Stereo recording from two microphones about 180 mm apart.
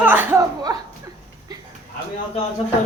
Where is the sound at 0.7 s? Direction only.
20° right (ahead or behind).